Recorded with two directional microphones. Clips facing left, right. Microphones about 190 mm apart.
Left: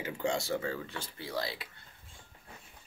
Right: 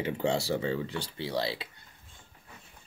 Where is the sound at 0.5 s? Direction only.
25° right (ahead or behind).